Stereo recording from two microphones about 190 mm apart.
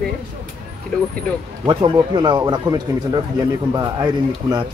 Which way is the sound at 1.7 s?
25° right (ahead or behind).